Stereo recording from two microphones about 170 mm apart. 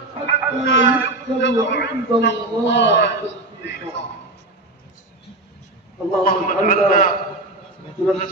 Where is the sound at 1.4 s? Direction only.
90° left.